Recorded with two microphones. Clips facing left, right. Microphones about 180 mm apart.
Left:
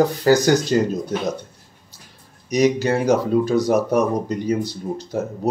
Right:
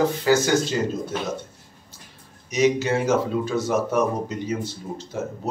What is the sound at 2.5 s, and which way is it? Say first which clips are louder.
Speech: left 3 dB; 35° left (ahead or behind).